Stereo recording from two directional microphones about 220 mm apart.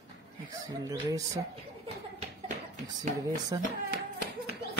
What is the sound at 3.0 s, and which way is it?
Speech, 15° right (ahead or behind).